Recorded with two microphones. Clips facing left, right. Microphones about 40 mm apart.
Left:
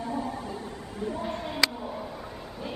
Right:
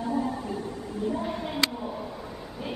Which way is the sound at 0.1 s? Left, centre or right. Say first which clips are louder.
Right 5 dB; right.